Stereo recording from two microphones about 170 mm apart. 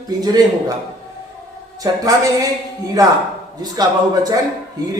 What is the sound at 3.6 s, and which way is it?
Speech, 20° right (ahead or behind).